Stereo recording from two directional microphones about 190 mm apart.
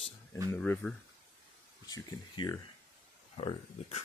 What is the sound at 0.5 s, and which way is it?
Speech, 10° left (ahead or behind).